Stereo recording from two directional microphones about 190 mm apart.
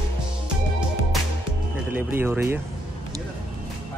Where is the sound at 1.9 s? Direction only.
10° right (ahead or behind).